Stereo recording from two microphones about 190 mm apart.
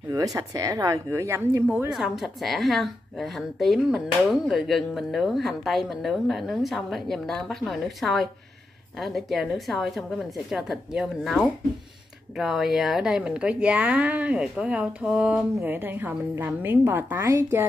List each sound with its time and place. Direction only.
0.1 s a woman's voice: 15° right (ahead or behind)